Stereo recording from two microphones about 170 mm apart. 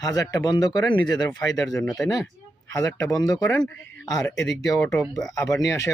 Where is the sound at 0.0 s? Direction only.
20° left (ahead or behind).